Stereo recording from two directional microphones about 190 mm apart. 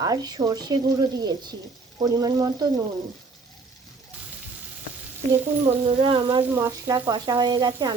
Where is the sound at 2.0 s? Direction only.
20° right (ahead or behind).